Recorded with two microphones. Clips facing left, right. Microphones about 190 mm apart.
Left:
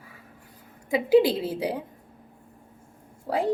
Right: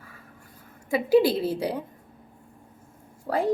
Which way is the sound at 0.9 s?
15° left (ahead or behind).